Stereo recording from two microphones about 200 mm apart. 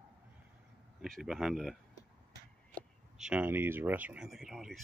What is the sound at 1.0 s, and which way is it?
Speech, centre (ahead or behind).